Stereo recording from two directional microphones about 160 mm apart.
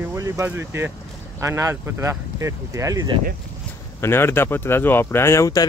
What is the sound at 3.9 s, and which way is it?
Speech, 15° left (ahead or behind).